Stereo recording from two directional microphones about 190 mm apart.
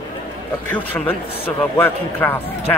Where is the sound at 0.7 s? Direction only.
10° left (ahead or behind).